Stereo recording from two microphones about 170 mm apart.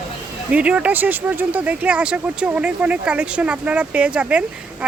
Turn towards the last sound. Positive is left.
turn(degrees=-5)  # may be behind; listen again after turning